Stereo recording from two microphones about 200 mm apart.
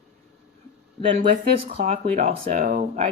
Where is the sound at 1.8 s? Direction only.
35° right (ahead or behind).